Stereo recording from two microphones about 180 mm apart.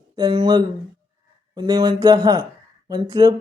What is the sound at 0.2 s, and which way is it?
Speech, 25° right (ahead or behind).